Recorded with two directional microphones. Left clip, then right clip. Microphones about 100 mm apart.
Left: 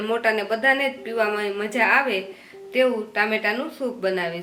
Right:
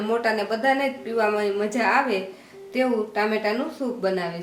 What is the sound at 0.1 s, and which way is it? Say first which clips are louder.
A woman's voice: left 1 dB; 35° left (ahead or behind).